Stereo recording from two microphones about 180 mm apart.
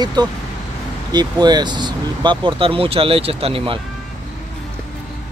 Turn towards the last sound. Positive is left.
turn(degrees=-30)  # may be behind; listen again after turning